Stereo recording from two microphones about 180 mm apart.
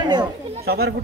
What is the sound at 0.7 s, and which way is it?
Speech, 60° right (ahead or behind).